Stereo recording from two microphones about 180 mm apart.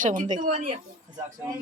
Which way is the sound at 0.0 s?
45° right (ahead or behind).